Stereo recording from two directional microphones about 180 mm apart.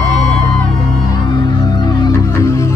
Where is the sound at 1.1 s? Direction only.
25° left (ahead or behind).